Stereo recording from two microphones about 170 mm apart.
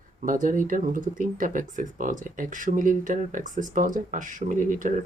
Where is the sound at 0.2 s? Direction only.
50° right (ahead or behind).